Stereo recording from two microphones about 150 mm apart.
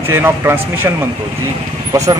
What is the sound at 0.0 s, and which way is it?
Speech, 15° right (ahead or behind).